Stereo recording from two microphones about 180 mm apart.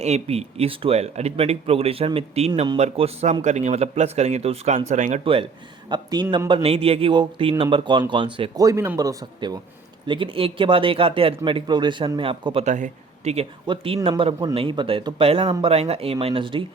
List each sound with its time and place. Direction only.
0.0 s speech: 35° right (ahead or behind)
5.2 s speech: 30° right (ahead or behind)
12.6 s speech: 40° right (ahead or behind)
15.4 s speech: 20° right (ahead or behind)
15.7 s speech: 35° right (ahead or behind)